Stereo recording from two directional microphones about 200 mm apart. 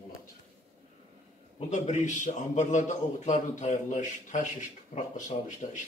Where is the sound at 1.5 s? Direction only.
35° left (ahead or behind).